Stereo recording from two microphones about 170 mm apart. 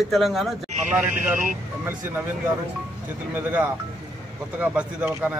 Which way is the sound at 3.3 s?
10° right (ahead or behind).